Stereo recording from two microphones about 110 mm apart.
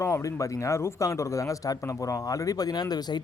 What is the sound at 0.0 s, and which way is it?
Speech, 25° left (ahead or behind).